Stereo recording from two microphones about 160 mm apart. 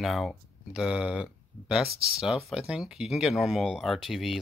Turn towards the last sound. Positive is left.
turn(degrees=0)  # may be behind; listen again after turning